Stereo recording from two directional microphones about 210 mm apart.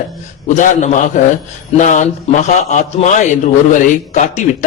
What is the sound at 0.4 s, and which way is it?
A man's voice, 35° left (ahead or behind).